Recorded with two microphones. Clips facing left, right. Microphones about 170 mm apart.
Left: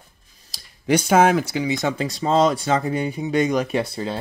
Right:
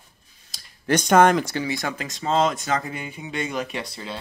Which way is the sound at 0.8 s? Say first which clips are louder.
Even; 10° left (ahead or behind).